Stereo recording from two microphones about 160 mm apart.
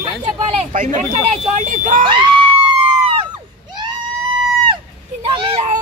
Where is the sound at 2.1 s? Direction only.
30° right (ahead or behind).